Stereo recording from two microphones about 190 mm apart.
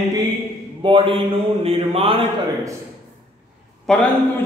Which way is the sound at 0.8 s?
25° right (ahead or behind).